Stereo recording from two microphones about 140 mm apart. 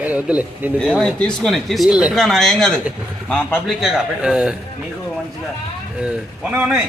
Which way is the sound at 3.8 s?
Centre (ahead or behind).